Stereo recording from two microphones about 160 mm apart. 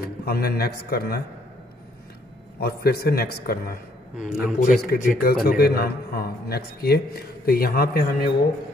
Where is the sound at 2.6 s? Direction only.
75° left (ahead or behind).